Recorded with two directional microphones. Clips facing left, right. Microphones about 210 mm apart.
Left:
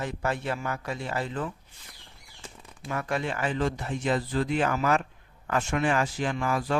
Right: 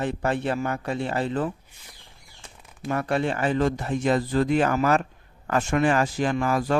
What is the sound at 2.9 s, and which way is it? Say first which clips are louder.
Speech: right 5 dB; 35° right (ahead or behind).